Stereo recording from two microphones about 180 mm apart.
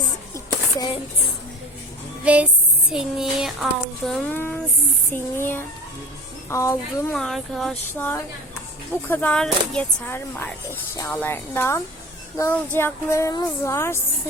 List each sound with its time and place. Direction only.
2.2 s music: 10° right (ahead or behind)
2.9 s speech: centre (ahead or behind); by 7.1 s 15° left (ahead or behind)
7.1 s speech: centre (ahead or behind)
9.0 s speech: 10° left (ahead or behind)